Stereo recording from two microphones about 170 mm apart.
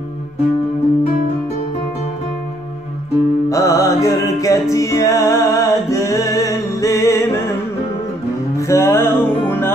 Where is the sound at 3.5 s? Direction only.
20° left (ahead or behind).